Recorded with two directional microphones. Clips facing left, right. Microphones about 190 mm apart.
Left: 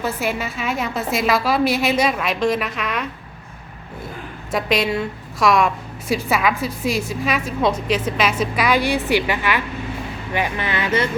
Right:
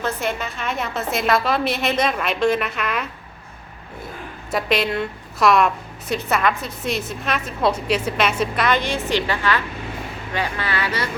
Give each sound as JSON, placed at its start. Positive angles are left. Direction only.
{"t": 0.0, "sound": "a woman's voice", "side_deg": 5}
{"t": 4.5, "sound": "a woman's voice", "side_deg": 0}